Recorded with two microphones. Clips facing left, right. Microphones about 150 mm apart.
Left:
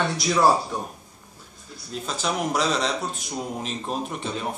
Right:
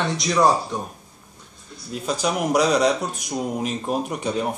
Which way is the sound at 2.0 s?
10° right (ahead or behind).